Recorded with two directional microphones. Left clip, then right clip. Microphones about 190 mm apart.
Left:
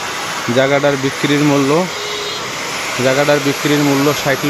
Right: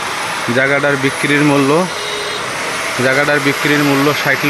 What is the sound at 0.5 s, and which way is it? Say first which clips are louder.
Speech: left 1 dB; 10° left (ahead or behind).